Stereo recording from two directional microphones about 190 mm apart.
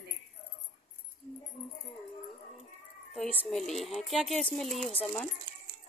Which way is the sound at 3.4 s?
Centre (ahead or behind).